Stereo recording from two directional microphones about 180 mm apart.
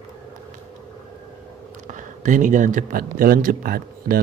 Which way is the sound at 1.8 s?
45° right (ahead or behind).